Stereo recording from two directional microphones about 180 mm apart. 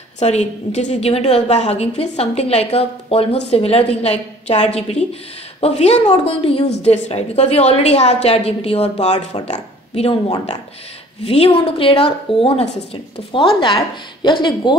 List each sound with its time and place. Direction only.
0.2 s a woman's voice: 35° left (ahead or behind)
11.2 s a woman's voice: 30° left (ahead or behind)